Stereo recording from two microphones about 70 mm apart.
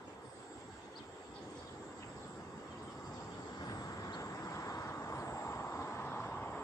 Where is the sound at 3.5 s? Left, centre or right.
Left.